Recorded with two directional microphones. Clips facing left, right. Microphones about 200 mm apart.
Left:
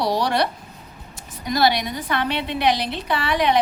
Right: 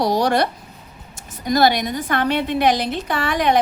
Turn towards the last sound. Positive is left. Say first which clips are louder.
# right 1 dB
turn(degrees=-45)  # may be behind; listen again after turning